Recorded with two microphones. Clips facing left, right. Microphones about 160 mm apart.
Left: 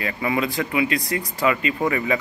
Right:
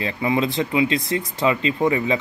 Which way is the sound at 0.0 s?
25° right (ahead or behind).